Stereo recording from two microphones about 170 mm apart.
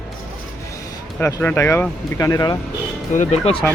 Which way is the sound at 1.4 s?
15° left (ahead or behind).